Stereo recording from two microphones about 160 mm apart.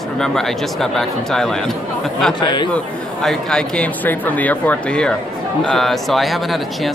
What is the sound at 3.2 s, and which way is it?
Speech, 5° left (ahead or behind).